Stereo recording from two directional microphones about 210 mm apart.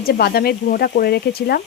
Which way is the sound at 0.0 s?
50° left (ahead or behind).